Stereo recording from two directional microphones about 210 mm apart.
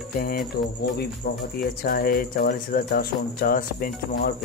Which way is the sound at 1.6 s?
40° left (ahead or behind).